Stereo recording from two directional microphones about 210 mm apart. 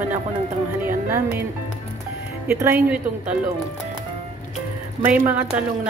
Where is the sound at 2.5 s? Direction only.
10° right (ahead or behind).